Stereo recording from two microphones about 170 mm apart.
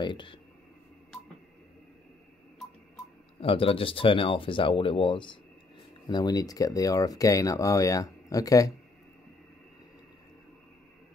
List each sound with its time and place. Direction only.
0.0 s speech: 30° left (ahead or behind)
3.3 s speech: 35° left (ahead or behind)